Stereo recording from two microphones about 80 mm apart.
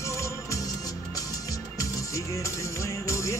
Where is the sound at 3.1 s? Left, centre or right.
Left.